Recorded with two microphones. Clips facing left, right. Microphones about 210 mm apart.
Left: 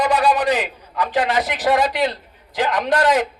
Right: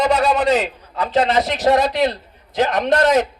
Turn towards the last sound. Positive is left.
turn(degrees=-25)  # may be behind; listen again after turning